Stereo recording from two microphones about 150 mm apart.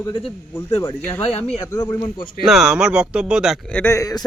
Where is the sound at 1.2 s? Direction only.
40° left (ahead or behind).